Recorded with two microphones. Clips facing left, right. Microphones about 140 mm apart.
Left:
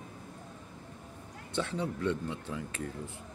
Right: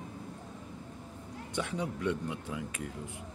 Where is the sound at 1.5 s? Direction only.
15° right (ahead or behind).